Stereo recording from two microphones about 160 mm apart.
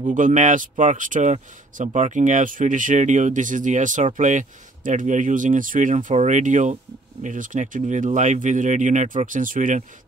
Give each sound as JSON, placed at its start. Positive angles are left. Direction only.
{"t": 0.0, "sound": "speech", "side_deg": -55}